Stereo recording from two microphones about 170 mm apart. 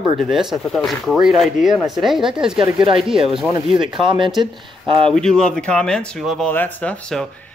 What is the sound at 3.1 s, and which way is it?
Speech, 30° right (ahead or behind).